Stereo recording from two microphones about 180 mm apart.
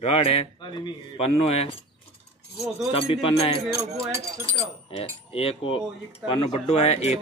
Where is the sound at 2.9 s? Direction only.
30° left (ahead or behind).